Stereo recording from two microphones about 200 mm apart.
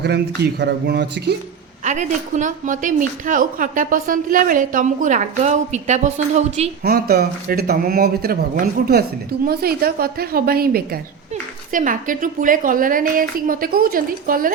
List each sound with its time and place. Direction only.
0.0 s speech: 55° right (ahead or behind)
1.8 s a woman's voice: 35° right (ahead or behind)
6.9 s a woman's voice: 50° right (ahead or behind)